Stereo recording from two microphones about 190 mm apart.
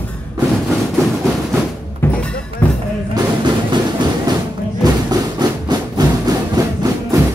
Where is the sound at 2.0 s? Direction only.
10° left (ahead or behind).